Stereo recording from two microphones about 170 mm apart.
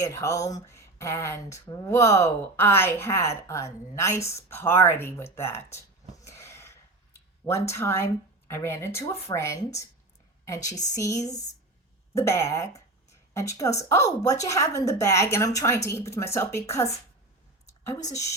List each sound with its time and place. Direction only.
0.0 s speech: 20° left (ahead or behind)
6.2 s a sound: 15° left (ahead or behind)
7.4 s a woman's voice: 15° left (ahead or behind)
18.1 s a woman's voice: 20° left (ahead or behind)